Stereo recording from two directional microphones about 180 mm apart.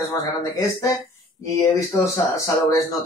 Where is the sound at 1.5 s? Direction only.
15° left (ahead or behind).